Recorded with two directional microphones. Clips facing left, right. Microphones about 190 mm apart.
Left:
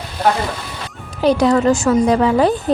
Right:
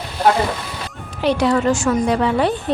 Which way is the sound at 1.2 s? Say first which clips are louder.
Left 3 dB; 40° left (ahead or behind).